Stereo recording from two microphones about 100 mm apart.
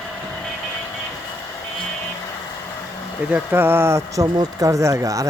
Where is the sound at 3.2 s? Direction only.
15° right (ahead or behind).